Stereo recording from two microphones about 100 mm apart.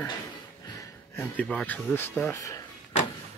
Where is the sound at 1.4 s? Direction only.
15° left (ahead or behind).